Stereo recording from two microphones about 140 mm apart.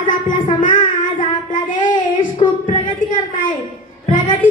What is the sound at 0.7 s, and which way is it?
Child singing, 35° left (ahead or behind).